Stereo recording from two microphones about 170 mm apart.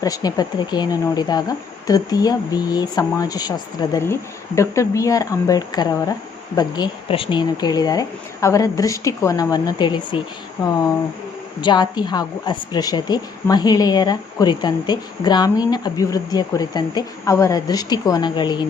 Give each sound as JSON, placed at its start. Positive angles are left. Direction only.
{"t": 0.0, "sound": "a woman's voice", "side_deg": 20}